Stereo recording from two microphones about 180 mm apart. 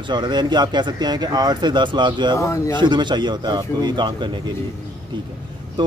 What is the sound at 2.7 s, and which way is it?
Speech, 25° right (ahead or behind).